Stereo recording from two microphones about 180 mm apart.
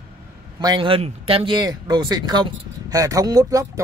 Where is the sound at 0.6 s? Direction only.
25° right (ahead or behind).